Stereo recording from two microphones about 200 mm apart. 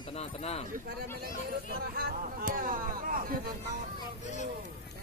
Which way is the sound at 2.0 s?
45° right (ahead or behind).